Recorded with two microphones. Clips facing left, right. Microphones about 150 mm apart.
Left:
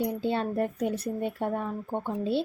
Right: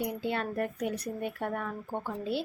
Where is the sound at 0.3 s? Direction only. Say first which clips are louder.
Left 4 dB; 25° left (ahead or behind).